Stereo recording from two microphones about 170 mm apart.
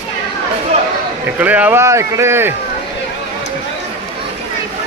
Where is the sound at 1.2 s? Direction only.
10° right (ahead or behind).